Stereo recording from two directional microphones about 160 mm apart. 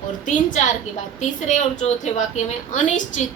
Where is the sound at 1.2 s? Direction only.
50° left (ahead or behind).